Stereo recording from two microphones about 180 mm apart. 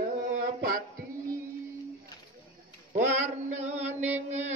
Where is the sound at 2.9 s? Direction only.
40° right (ahead or behind).